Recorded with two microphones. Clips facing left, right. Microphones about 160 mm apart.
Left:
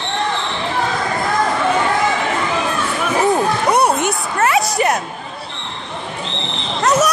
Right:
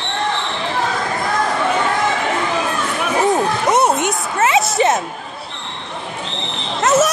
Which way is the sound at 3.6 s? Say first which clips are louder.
Right 1 dB; 20° right (ahead or behind).